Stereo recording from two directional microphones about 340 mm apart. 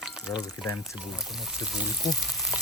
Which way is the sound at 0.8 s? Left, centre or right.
Centre.